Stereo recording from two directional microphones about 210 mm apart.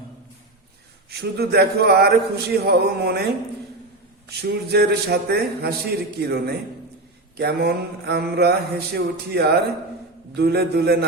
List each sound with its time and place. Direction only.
1.2 s mantra: 50° right (ahead or behind)
4.4 s mantra: 50° right (ahead or behind)